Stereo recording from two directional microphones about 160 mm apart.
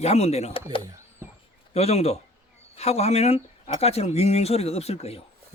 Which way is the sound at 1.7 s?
40° left (ahead or behind).